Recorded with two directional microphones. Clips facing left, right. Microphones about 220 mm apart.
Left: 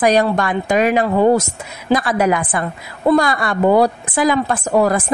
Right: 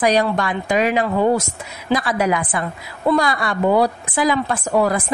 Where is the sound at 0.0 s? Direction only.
50° left (ahead or behind).